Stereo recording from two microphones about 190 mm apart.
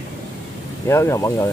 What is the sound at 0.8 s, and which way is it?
Speech, 15° left (ahead or behind).